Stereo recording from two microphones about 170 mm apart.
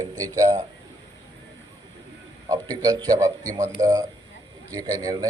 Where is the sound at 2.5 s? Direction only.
20° right (ahead or behind).